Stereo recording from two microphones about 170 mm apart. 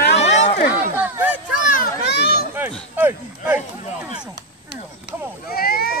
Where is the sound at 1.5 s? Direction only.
50° left (ahead or behind); by 2.4 s 70° left (ahead or behind).